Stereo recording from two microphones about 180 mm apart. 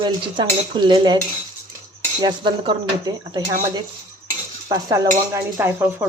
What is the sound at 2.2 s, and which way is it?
Speech, 25° right (ahead or behind).